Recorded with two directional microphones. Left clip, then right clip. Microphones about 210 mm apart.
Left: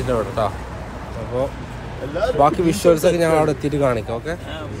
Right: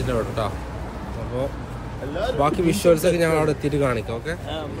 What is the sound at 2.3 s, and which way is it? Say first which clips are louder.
Speech: left 5 dB; centre (ahead or behind).